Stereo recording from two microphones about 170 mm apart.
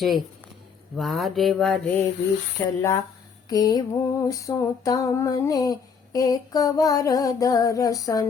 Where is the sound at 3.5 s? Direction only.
20° left (ahead or behind).